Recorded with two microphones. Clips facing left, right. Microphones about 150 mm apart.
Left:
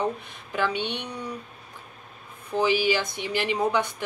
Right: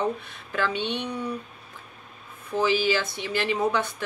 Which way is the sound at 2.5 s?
15° left (ahead or behind).